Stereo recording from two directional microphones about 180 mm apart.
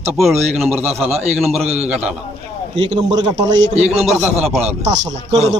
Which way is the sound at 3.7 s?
35° right (ahead or behind).